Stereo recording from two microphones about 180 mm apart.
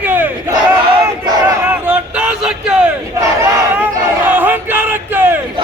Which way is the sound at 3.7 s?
10° right (ahead or behind).